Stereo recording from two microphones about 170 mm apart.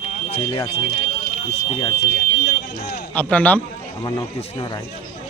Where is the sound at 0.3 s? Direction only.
35° left (ahead or behind).